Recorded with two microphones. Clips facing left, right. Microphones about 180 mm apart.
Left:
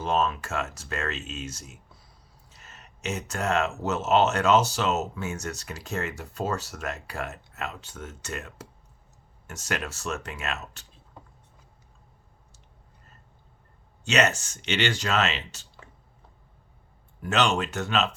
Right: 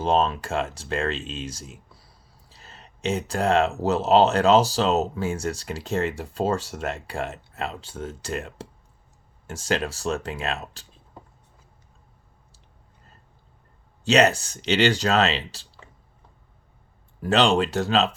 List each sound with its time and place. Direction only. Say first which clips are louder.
0.0 s speech: right 4 dB; 30° right (ahead or behind)
14.0 s speech: right 5 dB; 35° right (ahead or behind)
17.2 s speech: right 5 dB; 35° right (ahead or behind)